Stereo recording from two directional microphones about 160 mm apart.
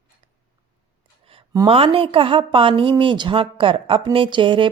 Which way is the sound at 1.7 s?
35° right (ahead or behind).